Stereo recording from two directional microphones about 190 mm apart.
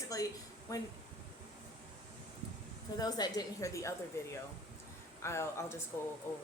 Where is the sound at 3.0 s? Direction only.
20° left (ahead or behind).